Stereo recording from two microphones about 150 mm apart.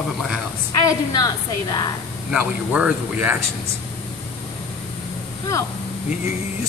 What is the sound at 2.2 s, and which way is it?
Speech, 10° right (ahead or behind).